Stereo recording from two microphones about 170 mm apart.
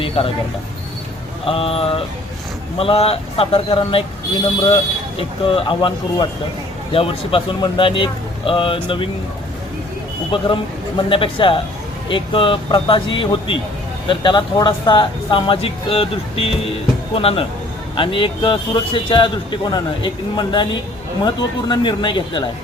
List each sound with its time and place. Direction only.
0.2 s speech: 35° left (ahead or behind)
1.5 s speech: 35° left (ahead or behind)
5.5 s speech: 30° left (ahead or behind)
10.3 s a man's voice: 30° left (ahead or behind)